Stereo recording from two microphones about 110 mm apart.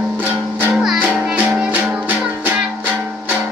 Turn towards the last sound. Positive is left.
turn(degrees=-15)  # may be behind; listen again after turning